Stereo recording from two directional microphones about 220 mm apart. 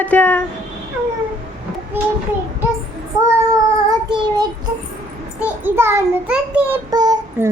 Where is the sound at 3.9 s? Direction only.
20° right (ahead or behind).